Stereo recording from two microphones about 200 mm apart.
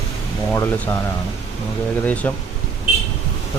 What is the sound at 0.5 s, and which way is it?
Speech, 10° left (ahead or behind).